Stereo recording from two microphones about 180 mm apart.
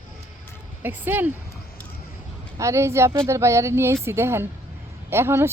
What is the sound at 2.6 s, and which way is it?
Speech, 15° right (ahead or behind).